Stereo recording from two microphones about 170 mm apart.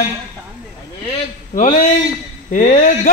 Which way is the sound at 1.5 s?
50° left (ahead or behind).